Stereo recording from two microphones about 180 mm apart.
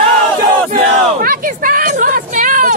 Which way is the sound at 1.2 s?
50° right (ahead or behind).